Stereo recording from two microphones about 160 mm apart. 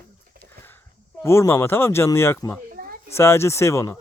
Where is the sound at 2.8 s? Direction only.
70° right (ahead or behind).